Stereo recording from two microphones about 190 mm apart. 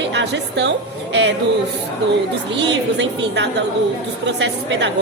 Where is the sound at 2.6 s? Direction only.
65° right (ahead or behind).